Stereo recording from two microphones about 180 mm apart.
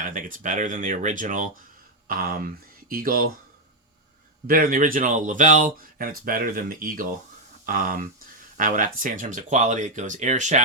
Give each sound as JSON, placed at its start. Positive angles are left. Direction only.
{"t": 0.0, "sound": "speech", "side_deg": -50}
{"t": 2.9, "sound": "speech", "side_deg": -55}
{"t": 4.4, "sound": "speech", "side_deg": -50}